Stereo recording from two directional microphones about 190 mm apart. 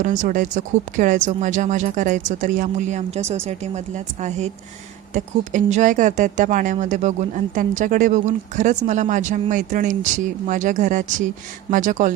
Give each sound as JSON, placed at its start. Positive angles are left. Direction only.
{"t": 0.0, "sound": "speech", "side_deg": -40}